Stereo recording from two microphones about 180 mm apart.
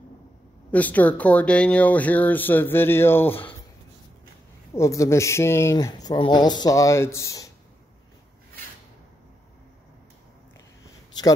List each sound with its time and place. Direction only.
0.7 s speech: 10° left (ahead or behind)
4.7 s speech: 15° left (ahead or behind)